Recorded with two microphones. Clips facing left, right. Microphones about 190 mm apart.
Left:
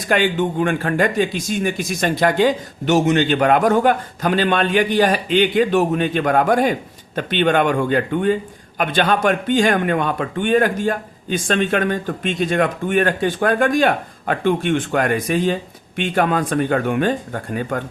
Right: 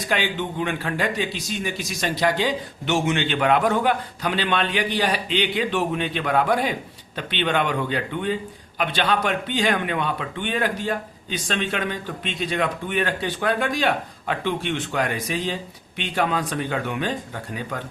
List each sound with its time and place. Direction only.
0.1 s a man's voice: 50° left (ahead or behind)